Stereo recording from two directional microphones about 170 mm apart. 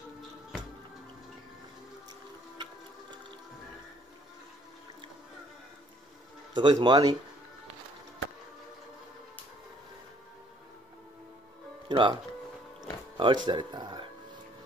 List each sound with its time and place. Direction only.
2.5 s water: 25° right (ahead or behind)
6.5 s speech: 25° right (ahead or behind)
11.9 s music: 30° right (ahead or behind)
13.2 s speech: 30° right (ahead or behind)